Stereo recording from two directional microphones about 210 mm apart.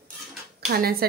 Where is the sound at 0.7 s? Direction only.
45° right (ahead or behind).